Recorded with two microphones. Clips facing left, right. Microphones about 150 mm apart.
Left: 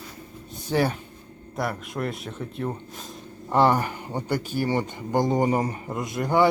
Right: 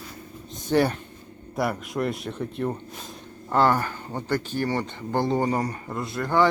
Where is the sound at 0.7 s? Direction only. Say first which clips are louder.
Right 2 dB; centre (ahead or behind).